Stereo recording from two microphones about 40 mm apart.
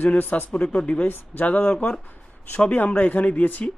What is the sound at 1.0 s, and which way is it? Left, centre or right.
Speech, left.